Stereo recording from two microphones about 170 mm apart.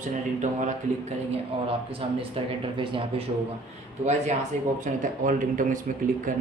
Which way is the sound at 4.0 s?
45° right (ahead or behind).